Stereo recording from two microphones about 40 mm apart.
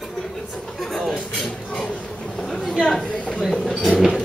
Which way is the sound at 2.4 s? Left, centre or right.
Centre.